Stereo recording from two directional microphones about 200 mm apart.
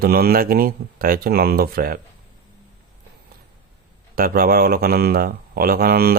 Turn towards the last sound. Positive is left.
turn(degrees=-50)  # may be behind; listen again after turning